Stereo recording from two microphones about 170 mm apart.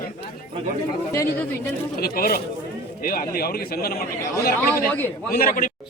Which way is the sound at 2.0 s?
65° left (ahead or behind).